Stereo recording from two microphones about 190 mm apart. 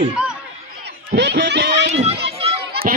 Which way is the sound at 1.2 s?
65° right (ahead or behind).